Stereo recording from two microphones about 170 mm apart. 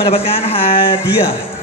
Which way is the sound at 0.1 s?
35° left (ahead or behind).